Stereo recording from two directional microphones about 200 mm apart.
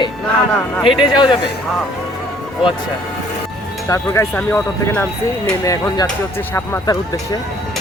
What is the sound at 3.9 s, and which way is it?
Speech, 15° left (ahead or behind).